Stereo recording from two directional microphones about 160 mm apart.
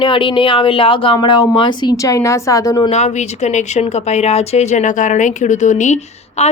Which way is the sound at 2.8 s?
45° left (ahead or behind).